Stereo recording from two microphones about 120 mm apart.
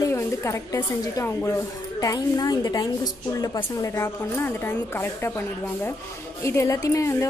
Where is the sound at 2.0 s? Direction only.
30° left (ahead or behind).